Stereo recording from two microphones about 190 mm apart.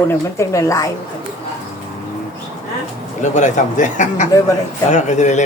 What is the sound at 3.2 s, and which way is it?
A man's voice, 40° left (ahead or behind).